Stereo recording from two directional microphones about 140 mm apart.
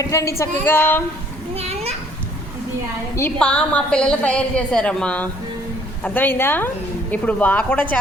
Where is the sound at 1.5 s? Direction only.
45° right (ahead or behind).